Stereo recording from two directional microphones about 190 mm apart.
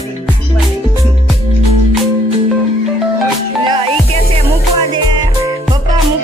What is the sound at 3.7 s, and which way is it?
Music, 30° right (ahead or behind).